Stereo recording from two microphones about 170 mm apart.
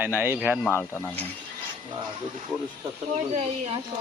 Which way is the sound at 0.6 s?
10° left (ahead or behind).